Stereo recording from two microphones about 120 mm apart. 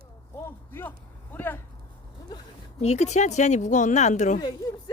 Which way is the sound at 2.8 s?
65° left (ahead or behind).